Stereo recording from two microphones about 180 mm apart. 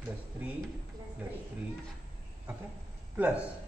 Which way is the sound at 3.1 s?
10° right (ahead or behind).